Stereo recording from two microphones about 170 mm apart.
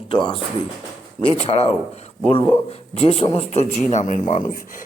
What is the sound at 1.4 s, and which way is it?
A man's voice, 35° left (ahead or behind).